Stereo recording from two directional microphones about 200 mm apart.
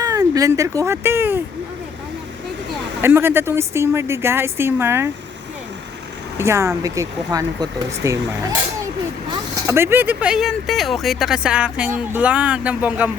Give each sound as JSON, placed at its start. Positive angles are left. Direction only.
{"t": 0.0, "sound": "speech", "side_deg": -15}
{"t": 3.0, "sound": "speech", "side_deg": -10}
{"t": 6.3, "sound": "speech", "side_deg": -15}
{"t": 9.6, "sound": "speech", "side_deg": -10}